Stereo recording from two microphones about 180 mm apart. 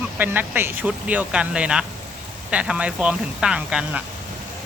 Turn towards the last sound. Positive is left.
turn(degrees=-5)  # may be behind; listen again after turning